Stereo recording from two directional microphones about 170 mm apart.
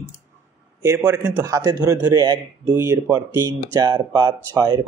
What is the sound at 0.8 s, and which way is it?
Speech, 20° right (ahead or behind).